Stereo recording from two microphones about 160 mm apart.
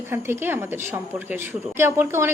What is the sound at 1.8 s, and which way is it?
Speech, 15° right (ahead or behind).